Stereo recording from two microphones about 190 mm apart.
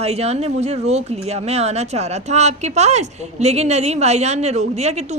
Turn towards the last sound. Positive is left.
turn(degrees=-35)  # may be behind; listen again after turning